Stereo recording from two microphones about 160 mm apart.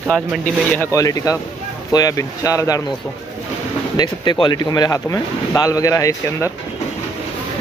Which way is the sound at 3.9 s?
25° left (ahead or behind).